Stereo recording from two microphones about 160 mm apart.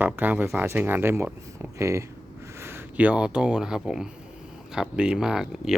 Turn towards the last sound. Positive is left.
turn(degrees=-5)  # may be behind; listen again after turning